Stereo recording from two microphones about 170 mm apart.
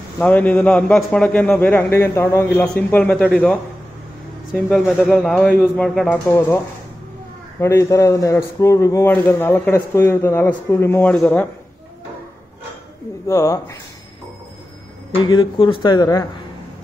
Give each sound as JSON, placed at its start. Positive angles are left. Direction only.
{"t": 0.2, "sound": "a man's voice", "side_deg": 10}
{"t": 4.6, "sound": "a man's voice", "side_deg": 5}
{"t": 7.6, "sound": "a man's voice", "side_deg": 15}
{"t": 13.3, "sound": "a man's voice", "side_deg": 15}
{"t": 15.1, "sound": "speech", "side_deg": 25}